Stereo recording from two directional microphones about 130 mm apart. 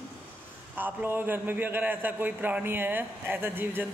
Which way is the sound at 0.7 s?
15° right (ahead or behind).